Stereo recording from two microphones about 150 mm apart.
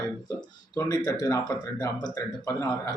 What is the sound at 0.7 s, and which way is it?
Speech, 25° left (ahead or behind).